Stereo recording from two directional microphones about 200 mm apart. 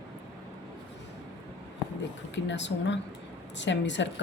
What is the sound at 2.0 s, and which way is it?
Speech, 65° left (ahead or behind).